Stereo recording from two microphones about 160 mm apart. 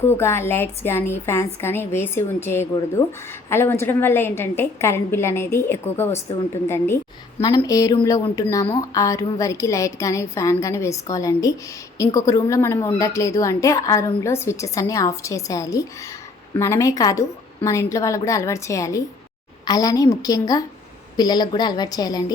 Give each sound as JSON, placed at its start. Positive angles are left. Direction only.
{"t": 0.2, "sound": "a woman's voice", "side_deg": 15}